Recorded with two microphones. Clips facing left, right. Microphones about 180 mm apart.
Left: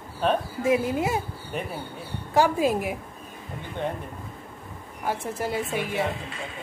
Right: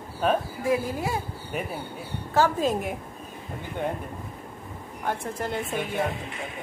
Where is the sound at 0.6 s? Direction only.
20° left (ahead or behind).